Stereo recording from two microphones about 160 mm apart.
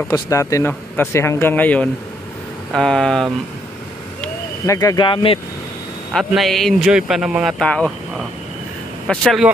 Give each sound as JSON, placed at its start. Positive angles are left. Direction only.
{"t": 0.1, "sound": "speech", "side_deg": 20}
{"t": 4.6, "sound": "speech", "side_deg": 20}
{"t": 6.1, "sound": "speech", "side_deg": 0}
{"t": 9.0, "sound": "speech", "side_deg": 5}